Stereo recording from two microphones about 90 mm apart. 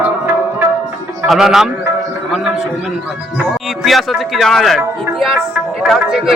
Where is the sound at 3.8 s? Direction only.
Centre (ahead or behind).